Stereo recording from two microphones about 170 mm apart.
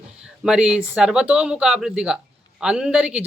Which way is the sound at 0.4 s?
5° right (ahead or behind).